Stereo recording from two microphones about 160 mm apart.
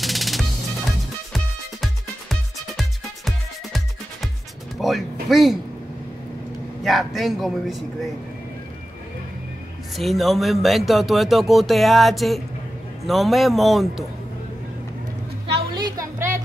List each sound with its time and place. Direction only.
0.0 s music: centre (ahead or behind)
5.3 s speech: centre (ahead or behind)
6.8 s speech: centre (ahead or behind)
9.9 s speech: centre (ahead or behind)
15.5 s music: 25° right (ahead or behind)